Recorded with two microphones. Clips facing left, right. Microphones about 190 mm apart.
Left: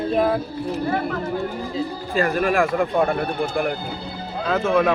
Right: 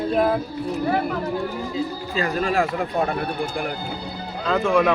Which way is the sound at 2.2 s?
50° left (ahead or behind).